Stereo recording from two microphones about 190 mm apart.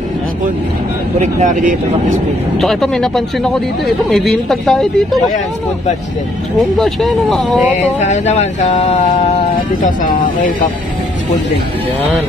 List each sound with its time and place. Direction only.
1.2 s speech: 40° right (ahead or behind)
2.6 s speech: centre (ahead or behind)
6.6 s speech: centre (ahead or behind)
7.7 s mantra: 40° left (ahead or behind)
9.8 s speech: 45° left (ahead or behind)